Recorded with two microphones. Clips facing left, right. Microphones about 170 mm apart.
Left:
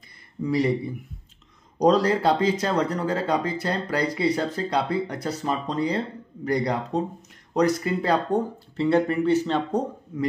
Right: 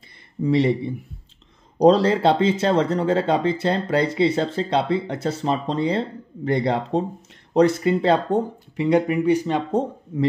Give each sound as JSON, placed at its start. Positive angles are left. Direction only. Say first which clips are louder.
{"t": 0.4, "sound": "speech", "louder": "right 4 dB", "side_deg": -25}
{"t": 8.7, "sound": "speech", "louder": "right 2 dB", "side_deg": -15}